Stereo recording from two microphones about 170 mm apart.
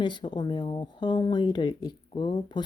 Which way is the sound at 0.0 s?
25° left (ahead or behind).